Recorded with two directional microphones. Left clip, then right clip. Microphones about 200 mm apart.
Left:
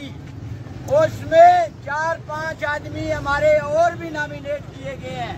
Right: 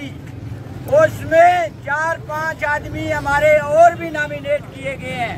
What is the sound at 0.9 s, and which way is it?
Speech, 10° right (ahead or behind).